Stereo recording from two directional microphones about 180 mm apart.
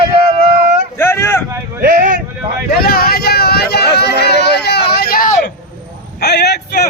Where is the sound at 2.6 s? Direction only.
55° left (ahead or behind).